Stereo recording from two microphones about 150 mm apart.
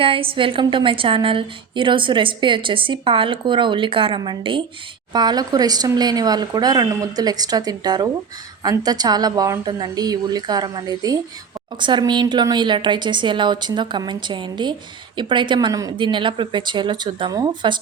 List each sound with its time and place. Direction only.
0.0 s a woman's voice: 35° right (ahead or behind)